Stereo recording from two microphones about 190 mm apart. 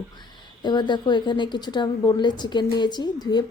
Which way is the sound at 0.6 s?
20° left (ahead or behind).